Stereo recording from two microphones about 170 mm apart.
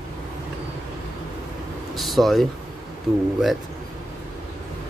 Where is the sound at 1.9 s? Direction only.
Centre (ahead or behind).